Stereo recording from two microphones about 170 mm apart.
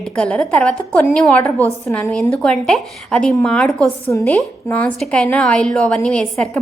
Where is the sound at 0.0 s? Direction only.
5° left (ahead or behind).